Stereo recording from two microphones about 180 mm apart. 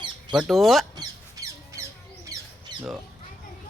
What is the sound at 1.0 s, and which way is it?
Squawk, 15° right (ahead or behind).